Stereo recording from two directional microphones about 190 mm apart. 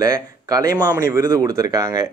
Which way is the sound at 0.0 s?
20° right (ahead or behind).